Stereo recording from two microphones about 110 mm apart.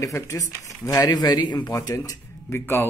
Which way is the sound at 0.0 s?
30° left (ahead or behind).